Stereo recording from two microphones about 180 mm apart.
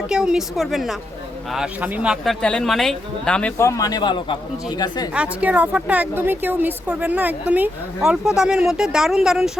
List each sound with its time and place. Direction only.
0.1 s speech: 5° right (ahead or behind)
3.6 s speech: 15° left (ahead or behind)
5.1 s speech: 5° right (ahead or behind)